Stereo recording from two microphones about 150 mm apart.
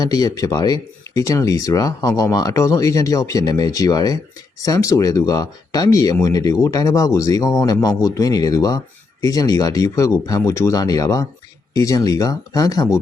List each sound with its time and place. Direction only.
0.0 s speech: 25° left (ahead or behind)